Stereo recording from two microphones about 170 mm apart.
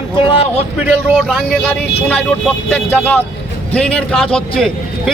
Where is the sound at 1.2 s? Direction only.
Centre (ahead or behind).